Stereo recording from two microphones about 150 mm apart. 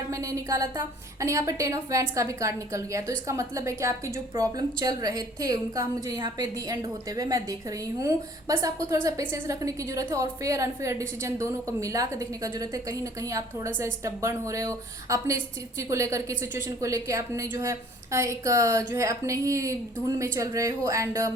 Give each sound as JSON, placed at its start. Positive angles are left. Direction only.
{"t": 0.1, "sound": "a woman's voice", "side_deg": -20}